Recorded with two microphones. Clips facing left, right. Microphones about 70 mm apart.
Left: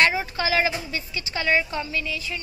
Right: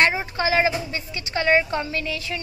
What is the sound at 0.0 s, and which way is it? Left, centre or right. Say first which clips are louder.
Speech: right 1 dB; right.